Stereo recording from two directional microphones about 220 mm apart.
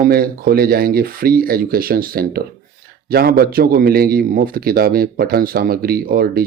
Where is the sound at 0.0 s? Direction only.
40° right (ahead or behind).